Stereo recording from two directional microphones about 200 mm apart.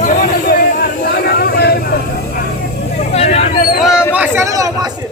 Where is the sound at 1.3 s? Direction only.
55° left (ahead or behind).